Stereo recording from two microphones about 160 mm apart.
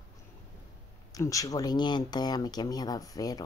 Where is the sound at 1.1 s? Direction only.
20° left (ahead or behind).